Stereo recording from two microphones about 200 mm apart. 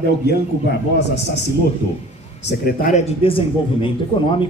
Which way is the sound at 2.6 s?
45° left (ahead or behind).